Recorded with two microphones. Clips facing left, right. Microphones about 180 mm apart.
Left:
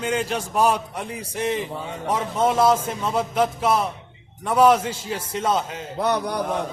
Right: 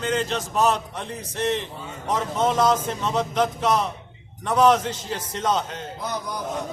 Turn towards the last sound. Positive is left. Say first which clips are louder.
# left 6 dB
turn(degrees=65)  # may be behind; listen again after turning